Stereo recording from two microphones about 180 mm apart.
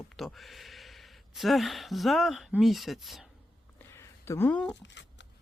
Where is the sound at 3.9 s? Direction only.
15° left (ahead or behind).